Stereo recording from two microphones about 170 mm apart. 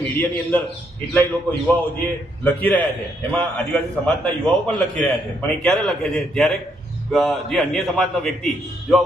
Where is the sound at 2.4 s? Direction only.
10° left (ahead or behind).